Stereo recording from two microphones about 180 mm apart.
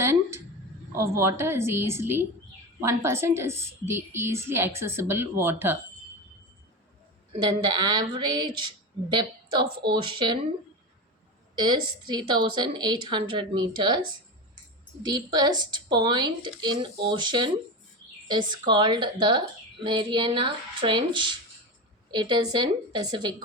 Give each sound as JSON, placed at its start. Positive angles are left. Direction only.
{"t": 0.0, "sound": "a sound", "side_deg": -15}
{"t": 1.0, "sound": "a woman's voice", "side_deg": -15}
{"t": 7.8, "sound": "a woman's voice", "side_deg": -25}
{"t": 11.5, "sound": "a woman's voice", "side_deg": -25}
{"t": 15.0, "sound": "a woman's voice", "side_deg": -20}